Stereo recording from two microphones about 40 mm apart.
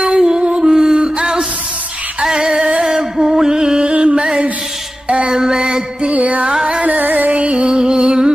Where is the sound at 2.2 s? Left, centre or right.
Centre.